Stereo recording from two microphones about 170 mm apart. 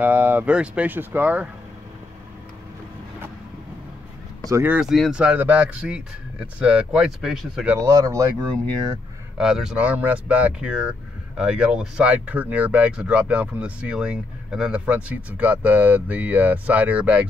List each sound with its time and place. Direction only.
0.0 s speech: 10° right (ahead or behind)
4.5 s speech: 15° right (ahead or behind)
4.7 s speech: centre (ahead or behind)
7.7 s speech: 20° right (ahead or behind)
9.4 s speech: 5° right (ahead or behind)